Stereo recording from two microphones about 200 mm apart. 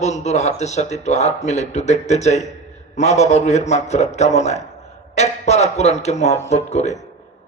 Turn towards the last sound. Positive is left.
turn(degrees=35)  # may be behind; listen again after turning